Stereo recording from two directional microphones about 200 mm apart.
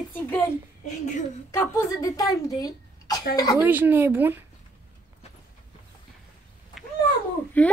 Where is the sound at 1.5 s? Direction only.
15° left (ahead or behind).